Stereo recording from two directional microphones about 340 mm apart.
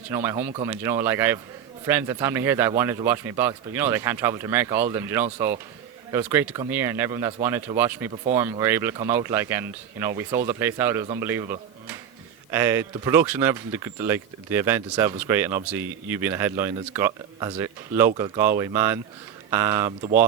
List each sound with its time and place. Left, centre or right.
0.1 s speech: centre